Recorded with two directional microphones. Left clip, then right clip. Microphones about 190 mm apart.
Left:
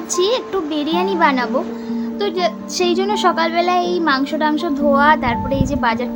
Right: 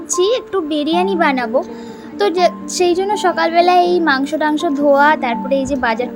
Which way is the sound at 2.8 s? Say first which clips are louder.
Right 1 dB; 5° right (ahead or behind).